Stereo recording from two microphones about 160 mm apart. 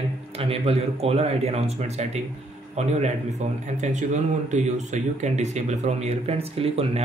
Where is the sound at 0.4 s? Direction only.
40° right (ahead or behind).